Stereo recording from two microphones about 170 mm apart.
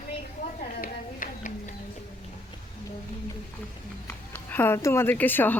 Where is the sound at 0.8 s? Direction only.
50° left (ahead or behind).